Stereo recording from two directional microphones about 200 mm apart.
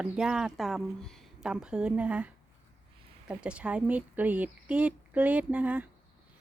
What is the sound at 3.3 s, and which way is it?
Speech, 5° right (ahead or behind).